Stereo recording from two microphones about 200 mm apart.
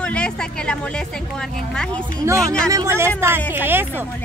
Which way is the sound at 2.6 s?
15° right (ahead or behind).